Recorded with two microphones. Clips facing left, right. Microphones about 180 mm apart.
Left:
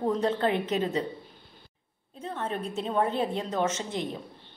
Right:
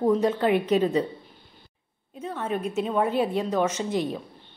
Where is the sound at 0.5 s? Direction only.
25° left (ahead or behind).